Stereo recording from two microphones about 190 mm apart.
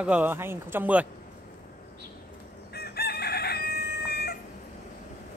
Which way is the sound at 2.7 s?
55° left (ahead or behind).